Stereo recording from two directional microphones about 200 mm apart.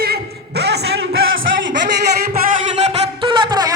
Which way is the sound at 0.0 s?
55° right (ahead or behind).